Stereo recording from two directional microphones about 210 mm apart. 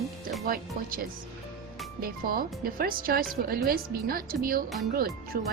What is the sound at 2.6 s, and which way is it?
A woman's voice, 45° right (ahead or behind).